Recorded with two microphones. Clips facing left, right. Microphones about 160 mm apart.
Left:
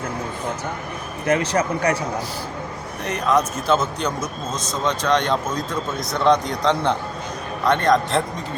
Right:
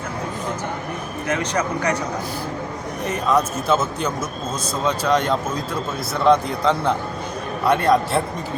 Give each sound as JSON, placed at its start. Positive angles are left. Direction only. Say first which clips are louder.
{"t": 1.3, "sound": "speech", "louder": "left 3 dB", "side_deg": 30}
{"t": 3.1, "sound": "a man's voice", "louder": "even", "side_deg": -5}